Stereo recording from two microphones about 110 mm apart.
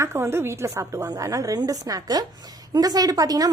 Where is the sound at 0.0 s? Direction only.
25° right (ahead or behind).